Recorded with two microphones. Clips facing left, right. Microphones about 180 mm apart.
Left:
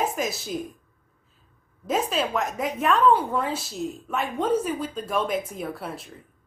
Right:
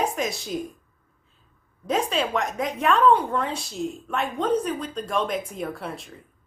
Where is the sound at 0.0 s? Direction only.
Centre (ahead or behind).